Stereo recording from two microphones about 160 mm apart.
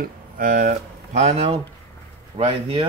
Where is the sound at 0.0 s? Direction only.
60° right (ahead or behind).